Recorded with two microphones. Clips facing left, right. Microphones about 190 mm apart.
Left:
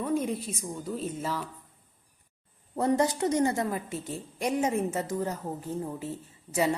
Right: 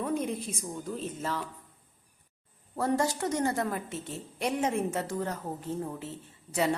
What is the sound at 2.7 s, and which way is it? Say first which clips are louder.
A woman's voice: left 3 dB; 20° left (ahead or behind).